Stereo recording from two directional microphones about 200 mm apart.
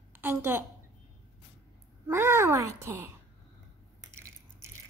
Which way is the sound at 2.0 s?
10° right (ahead or behind).